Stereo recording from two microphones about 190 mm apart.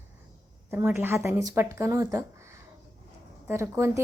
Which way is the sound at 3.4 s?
10° right (ahead or behind).